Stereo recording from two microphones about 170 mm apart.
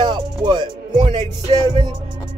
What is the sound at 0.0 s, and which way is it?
Music, 25° right (ahead or behind).